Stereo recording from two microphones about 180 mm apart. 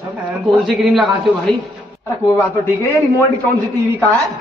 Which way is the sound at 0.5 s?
Centre (ahead or behind).